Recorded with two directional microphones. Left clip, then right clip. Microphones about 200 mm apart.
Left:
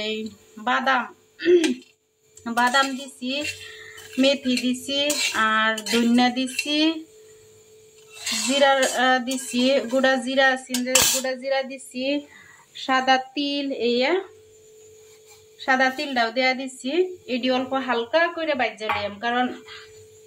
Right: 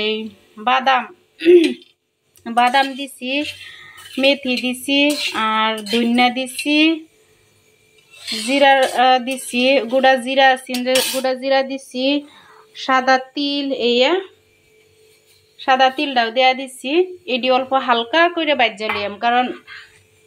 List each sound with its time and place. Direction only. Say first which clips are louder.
0.0 s speech: right 7 dB; 10° right (ahead or behind)
2.4 s cutlery: right 5 dB; 10° right (ahead or behind)
8.9 s cutlery: right 6 dB; 10° right (ahead or behind)
12.7 s cutlery: right 5 dB; 5° right (ahead or behind)
15.6 s a woman's voice: right 6 dB; 15° right (ahead or behind)